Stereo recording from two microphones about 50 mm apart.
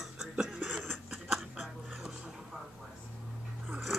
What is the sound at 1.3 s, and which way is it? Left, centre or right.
Dog, centre.